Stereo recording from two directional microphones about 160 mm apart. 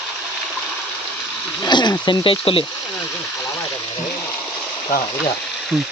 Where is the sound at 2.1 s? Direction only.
35° left (ahead or behind).